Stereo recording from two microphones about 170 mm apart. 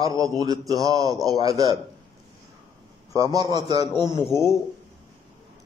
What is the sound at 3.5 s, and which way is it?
Speech, 25° right (ahead or behind).